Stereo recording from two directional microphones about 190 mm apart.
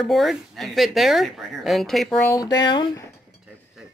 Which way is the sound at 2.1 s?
20° left (ahead or behind).